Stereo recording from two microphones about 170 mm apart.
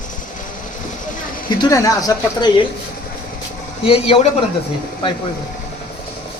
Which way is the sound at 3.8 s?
35° left (ahead or behind).